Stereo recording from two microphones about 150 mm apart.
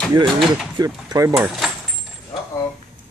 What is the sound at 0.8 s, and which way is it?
Speech, 25° right (ahead or behind).